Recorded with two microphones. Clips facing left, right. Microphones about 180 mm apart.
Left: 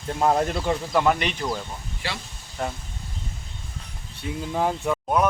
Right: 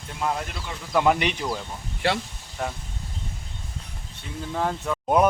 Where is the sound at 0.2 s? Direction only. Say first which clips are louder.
Left 7 dB; 40° left (ahead or behind).